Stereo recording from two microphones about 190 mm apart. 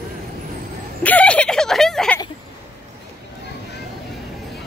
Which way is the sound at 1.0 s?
5° left (ahead or behind).